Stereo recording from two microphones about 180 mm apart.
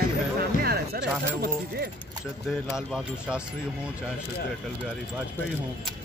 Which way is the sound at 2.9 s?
5° right (ahead or behind).